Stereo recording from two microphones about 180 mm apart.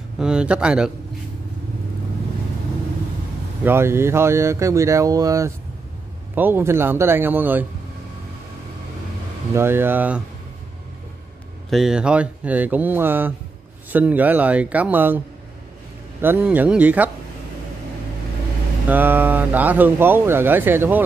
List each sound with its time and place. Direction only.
0.2 s speech: 5° right (ahead or behind)
3.6 s speech: 15° right (ahead or behind)
9.5 s speech: 15° right (ahead or behind)
11.7 s speech: 5° right (ahead or behind)
18.9 s speech: 10° right (ahead or behind)